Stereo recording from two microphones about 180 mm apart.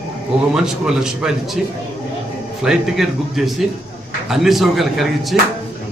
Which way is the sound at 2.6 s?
Centre (ahead or behind).